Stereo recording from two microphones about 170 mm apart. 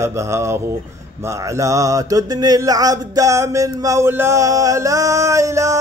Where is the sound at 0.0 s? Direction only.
15° right (ahead or behind).